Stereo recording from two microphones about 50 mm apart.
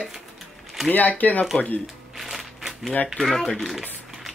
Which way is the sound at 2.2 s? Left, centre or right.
Centre.